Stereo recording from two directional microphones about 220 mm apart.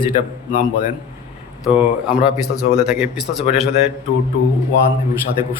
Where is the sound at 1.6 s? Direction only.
5° right (ahead or behind).